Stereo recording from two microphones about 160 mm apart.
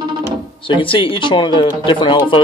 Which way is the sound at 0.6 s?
30° left (ahead or behind).